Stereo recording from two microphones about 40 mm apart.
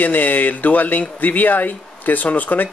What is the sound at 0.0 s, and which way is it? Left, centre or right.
Speech, left.